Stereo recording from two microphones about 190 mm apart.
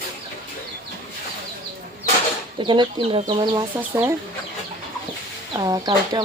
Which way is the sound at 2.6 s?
25° right (ahead or behind).